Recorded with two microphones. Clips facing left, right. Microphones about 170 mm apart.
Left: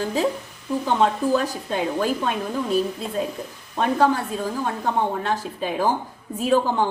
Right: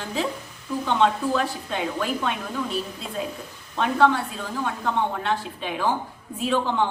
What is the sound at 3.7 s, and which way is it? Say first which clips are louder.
A woman's voice: left 1 dB; 40° left (ahead or behind).